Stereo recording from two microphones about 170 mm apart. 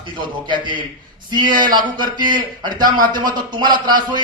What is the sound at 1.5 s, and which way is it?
A man's voice, 25° right (ahead or behind).